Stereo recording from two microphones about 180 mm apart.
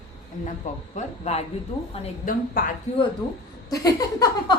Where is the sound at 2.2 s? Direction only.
50° left (ahead or behind).